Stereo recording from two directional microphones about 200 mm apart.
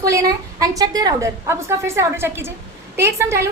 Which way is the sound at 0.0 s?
15° right (ahead or behind).